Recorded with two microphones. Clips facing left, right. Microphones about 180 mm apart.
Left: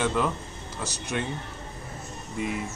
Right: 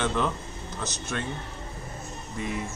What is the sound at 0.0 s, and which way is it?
A man's voice, 5° left (ahead or behind).